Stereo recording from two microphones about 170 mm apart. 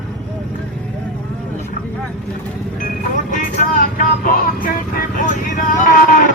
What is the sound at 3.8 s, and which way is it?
Speech, 55° left (ahead or behind).